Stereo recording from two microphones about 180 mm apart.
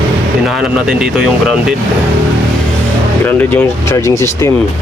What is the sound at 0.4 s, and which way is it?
Speech, centre (ahead or behind).